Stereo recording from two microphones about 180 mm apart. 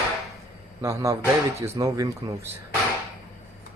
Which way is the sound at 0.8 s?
15° right (ahead or behind).